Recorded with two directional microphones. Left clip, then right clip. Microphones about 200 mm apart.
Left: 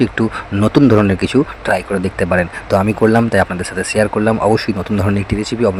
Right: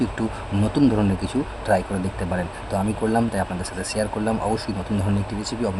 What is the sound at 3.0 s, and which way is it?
Speech, 40° left (ahead or behind).